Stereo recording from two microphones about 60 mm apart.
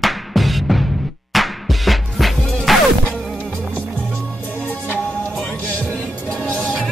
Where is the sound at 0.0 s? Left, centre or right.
Centre.